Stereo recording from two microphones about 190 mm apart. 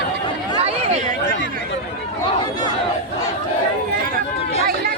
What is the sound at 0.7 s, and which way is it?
Chatter, 35° right (ahead or behind).